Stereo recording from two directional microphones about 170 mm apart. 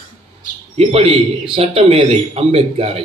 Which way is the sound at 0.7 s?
35° right (ahead or behind).